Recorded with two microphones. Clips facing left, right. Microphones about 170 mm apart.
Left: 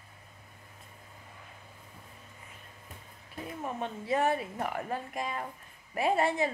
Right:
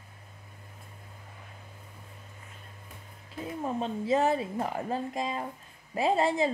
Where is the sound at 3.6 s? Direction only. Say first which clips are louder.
Right 5 dB; 25° right (ahead or behind).